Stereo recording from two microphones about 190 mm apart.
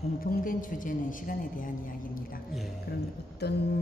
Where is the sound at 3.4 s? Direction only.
60° left (ahead or behind).